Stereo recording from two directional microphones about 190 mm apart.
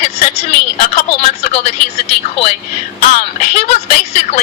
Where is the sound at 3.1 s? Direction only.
35° left (ahead or behind).